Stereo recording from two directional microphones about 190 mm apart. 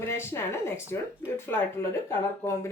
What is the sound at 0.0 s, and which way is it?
Speech, 10° left (ahead or behind).